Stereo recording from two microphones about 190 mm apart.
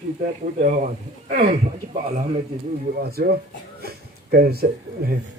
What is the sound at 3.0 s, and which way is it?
Speech, 55° right (ahead or behind).